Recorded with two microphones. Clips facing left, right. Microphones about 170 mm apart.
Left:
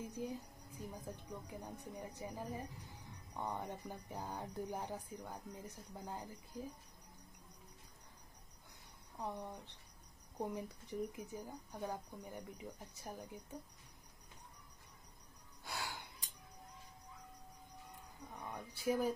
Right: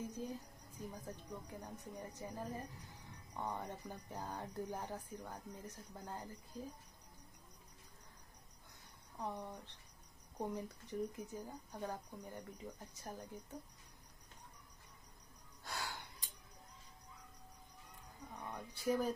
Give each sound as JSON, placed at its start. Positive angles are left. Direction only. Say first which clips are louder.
{"t": 0.0, "sound": "speech", "louder": "left 1 dB", "side_deg": 15}
{"t": 9.2, "sound": "speech", "louder": "even", "side_deg": 15}
{"t": 15.6, "sound": "gasp", "louder": "even", "side_deg": 15}
{"t": 18.4, "sound": "speech", "louder": "left 1 dB", "side_deg": 10}